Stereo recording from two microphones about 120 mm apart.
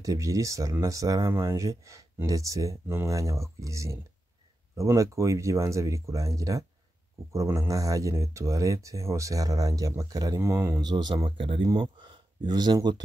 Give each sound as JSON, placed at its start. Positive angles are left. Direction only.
{"t": 0.0, "sound": "speech", "side_deg": -30}